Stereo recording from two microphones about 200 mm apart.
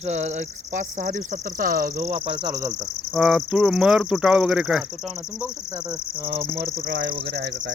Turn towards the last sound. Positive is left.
turn(degrees=-55)  # may be behind; listen again after turning